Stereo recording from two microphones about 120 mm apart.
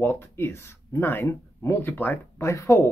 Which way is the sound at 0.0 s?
20° left (ahead or behind).